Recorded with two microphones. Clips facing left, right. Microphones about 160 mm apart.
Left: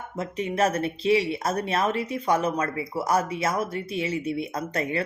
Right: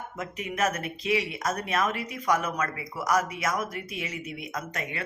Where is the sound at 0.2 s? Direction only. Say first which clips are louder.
Left 5 dB; 30° left (ahead or behind).